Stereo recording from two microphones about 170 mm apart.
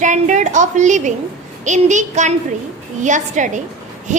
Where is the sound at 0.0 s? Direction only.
45° right (ahead or behind).